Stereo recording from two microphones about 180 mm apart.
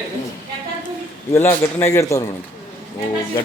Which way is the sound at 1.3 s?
10° left (ahead or behind).